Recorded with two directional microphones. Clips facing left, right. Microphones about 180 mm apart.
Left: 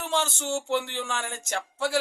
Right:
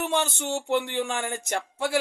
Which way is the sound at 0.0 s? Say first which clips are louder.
Right 2 dB; 15° right (ahead or behind).